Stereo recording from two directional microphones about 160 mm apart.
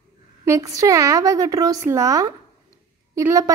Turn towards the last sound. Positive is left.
turn(degrees=-20)  # may be behind; listen again after turning